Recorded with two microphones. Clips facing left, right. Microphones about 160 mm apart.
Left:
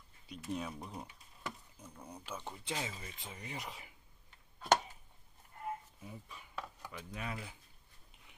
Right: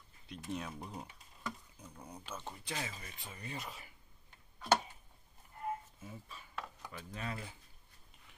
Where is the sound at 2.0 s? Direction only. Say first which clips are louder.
Even; 10° right (ahead or behind).